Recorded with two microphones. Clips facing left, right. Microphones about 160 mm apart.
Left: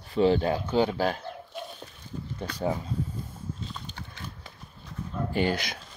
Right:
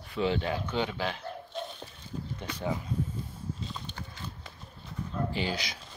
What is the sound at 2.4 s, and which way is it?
Speech, 40° left (ahead or behind).